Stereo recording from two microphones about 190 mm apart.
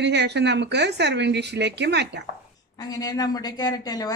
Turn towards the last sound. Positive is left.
turn(degrees=20)  # may be behind; listen again after turning